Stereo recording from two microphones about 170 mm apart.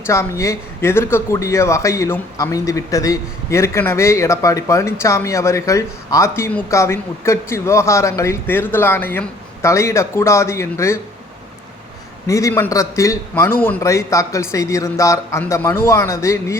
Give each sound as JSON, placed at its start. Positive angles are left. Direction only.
{"t": 0.1, "sound": "speech", "side_deg": 15}
{"t": 12.3, "sound": "speech", "side_deg": 20}